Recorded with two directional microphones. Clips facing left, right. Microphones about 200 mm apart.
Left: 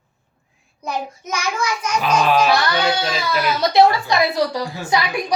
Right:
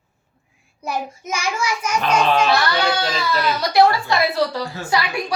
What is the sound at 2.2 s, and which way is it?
Speech, 10° left (ahead or behind).